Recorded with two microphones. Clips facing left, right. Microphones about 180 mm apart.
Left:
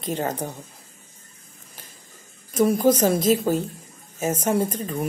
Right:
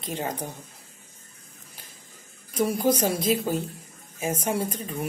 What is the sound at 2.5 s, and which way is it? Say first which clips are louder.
A woman's voice: left 5 dB; 45° left (ahead or behind).